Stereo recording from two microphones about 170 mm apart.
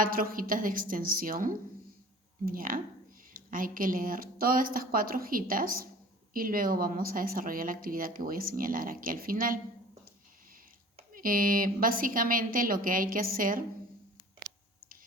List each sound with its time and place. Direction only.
0.0 s a woman's voice: 55° right (ahead or behind)
11.1 s a woman's voice: 55° right (ahead or behind)